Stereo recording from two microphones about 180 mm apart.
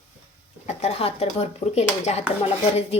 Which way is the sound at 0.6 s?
35° left (ahead or behind).